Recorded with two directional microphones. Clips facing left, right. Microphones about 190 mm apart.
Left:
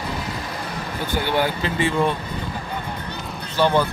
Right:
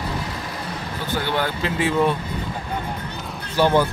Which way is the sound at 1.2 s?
10° left (ahead or behind).